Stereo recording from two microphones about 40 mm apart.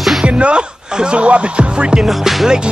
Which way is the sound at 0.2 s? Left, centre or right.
Right.